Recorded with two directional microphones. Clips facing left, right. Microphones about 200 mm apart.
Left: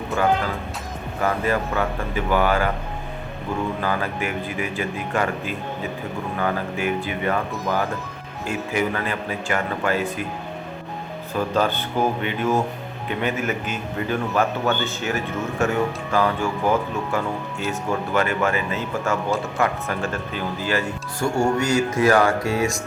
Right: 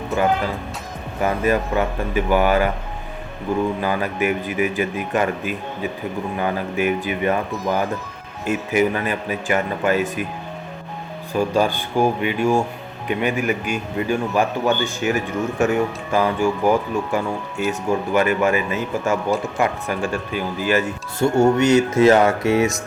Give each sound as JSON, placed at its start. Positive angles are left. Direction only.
{"t": 1.2, "sound": "speech", "side_deg": -20}
{"t": 3.8, "sound": "speech", "side_deg": -15}
{"t": 8.4, "sound": "speech", "side_deg": -20}
{"t": 11.3, "sound": "speech", "side_deg": -10}